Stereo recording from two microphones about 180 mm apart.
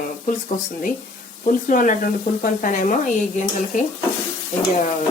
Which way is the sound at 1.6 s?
45° left (ahead or behind).